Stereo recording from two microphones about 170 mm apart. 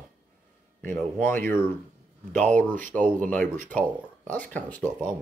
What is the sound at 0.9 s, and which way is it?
Speech, 10° left (ahead or behind).